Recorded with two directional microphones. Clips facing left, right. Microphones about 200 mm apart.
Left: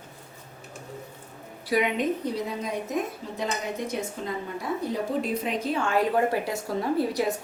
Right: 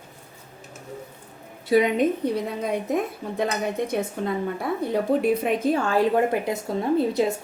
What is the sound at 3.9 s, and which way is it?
A woman's voice, 60° right (ahead or behind).